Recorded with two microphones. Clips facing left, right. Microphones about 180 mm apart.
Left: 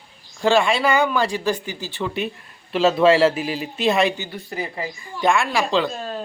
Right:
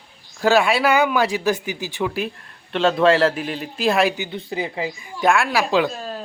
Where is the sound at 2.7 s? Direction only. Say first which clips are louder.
Left 1 dB; 5° left (ahead or behind).